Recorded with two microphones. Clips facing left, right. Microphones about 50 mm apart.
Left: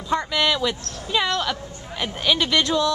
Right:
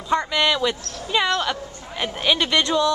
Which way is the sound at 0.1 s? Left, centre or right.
Centre.